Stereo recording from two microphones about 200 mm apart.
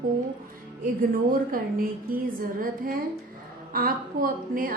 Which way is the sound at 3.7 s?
45° right (ahead or behind).